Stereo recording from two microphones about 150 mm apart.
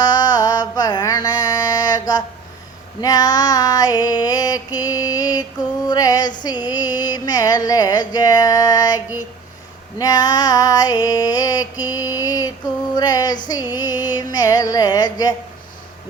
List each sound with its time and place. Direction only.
0.0 s mantra: 25° left (ahead or behind)
3.0 s a sound: 25° left (ahead or behind)
6.4 s music: 25° left (ahead or behind)
10.0 s a sound: 25° left (ahead or behind)
12.9 s female singing: 25° left (ahead or behind)
13.5 s music: 25° left (ahead or behind)